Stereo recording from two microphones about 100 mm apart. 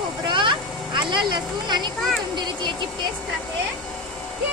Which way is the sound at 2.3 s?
50° right (ahead or behind).